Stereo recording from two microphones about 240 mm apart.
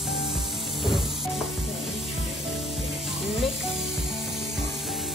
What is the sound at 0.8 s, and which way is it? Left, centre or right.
Sizzle, centre.